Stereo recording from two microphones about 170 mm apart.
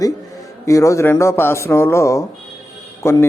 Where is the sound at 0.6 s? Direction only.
20° left (ahead or behind).